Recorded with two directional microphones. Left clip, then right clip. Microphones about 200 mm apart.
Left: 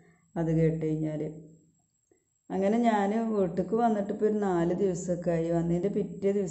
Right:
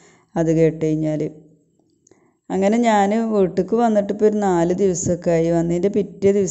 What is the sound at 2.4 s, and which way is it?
Speech, 45° right (ahead or behind).